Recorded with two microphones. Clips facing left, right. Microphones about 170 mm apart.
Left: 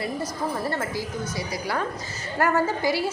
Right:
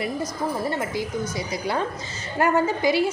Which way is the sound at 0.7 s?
15° right (ahead or behind).